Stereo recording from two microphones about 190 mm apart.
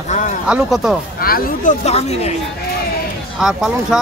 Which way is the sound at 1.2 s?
50° left (ahead or behind).